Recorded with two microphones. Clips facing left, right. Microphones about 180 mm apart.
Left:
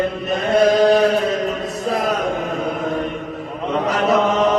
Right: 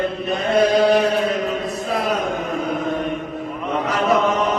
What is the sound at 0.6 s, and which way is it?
Chant, 40° left (ahead or behind).